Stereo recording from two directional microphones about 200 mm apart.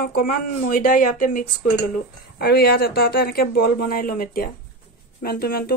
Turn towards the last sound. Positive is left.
turn(degrees=50)  # may be behind; listen again after turning